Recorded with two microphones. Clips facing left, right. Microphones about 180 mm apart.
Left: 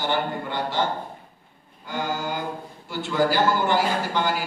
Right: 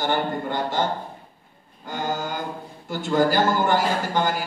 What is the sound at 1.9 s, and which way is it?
Music, 45° right (ahead or behind).